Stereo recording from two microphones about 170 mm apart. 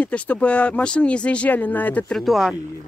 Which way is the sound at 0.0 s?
10° left (ahead or behind).